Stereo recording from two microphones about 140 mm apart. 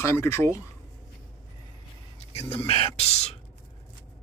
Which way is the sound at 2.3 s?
45° left (ahead or behind).